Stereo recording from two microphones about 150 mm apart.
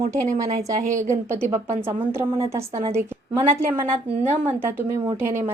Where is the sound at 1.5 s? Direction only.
40° right (ahead or behind).